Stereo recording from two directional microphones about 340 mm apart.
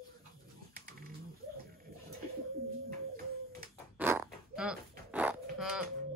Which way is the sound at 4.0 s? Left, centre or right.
Centre.